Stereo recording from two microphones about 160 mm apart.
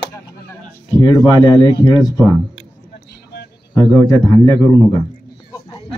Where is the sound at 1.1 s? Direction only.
20° left (ahead or behind).